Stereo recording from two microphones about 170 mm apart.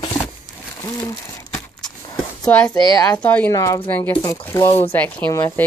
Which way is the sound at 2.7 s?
25° left (ahead or behind).